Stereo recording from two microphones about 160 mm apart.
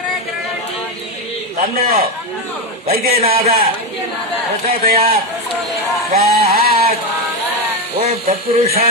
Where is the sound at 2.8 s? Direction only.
70° right (ahead or behind).